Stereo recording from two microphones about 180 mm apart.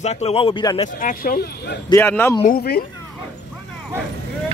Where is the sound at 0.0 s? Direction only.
35° left (ahead or behind).